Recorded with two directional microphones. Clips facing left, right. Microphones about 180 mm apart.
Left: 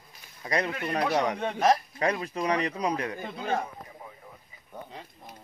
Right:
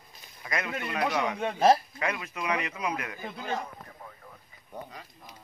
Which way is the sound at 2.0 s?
35° left (ahead or behind).